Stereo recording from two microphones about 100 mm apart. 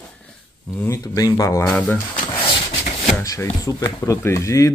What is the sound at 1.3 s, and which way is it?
Speech, 30° left (ahead or behind).